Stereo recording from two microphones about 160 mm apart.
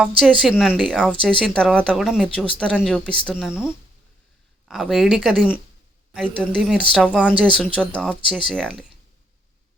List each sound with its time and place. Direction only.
0.2 s speech: centre (ahead or behind)
4.7 s a woman's voice: centre (ahead or behind)
7.8 s a woman's voice: 5° left (ahead or behind)